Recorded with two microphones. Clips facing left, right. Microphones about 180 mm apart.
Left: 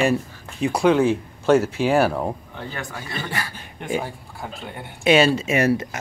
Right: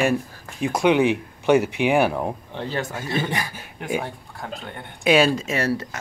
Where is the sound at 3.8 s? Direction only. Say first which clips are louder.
Left 1 dB; 5° right (ahead or behind).